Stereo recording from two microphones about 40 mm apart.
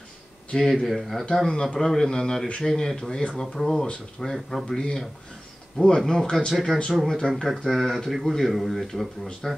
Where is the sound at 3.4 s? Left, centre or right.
Centre.